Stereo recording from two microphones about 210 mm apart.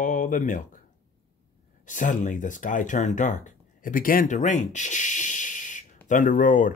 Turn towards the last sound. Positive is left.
turn(degrees=40)  # may be behind; listen again after turning